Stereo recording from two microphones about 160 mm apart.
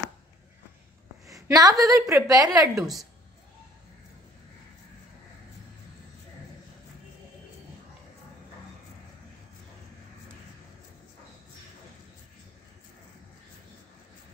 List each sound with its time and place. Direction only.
1.2 s a woman's voice: 20° right (ahead or behind)
2.8 s a woman's voice: centre (ahead or behind)